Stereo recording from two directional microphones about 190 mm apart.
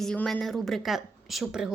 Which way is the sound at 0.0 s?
5° left (ahead or behind).